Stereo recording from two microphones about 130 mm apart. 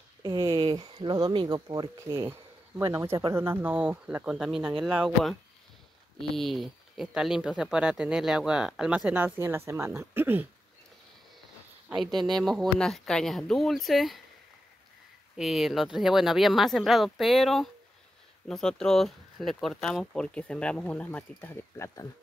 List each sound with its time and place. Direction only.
0.2 s a sound: 35° right (ahead or behind)
1.1 s speech: 35° right (ahead or behind)
2.0 s speech: 20° right (ahead or behind); by 5.3 s centre (ahead or behind)
6.3 s speech: centre (ahead or behind); by 10.5 s 15° right (ahead or behind)
12.3 s speech: centre (ahead or behind)
15.3 s speech: centre (ahead or behind); by 22.0 s 20° left (ahead or behind)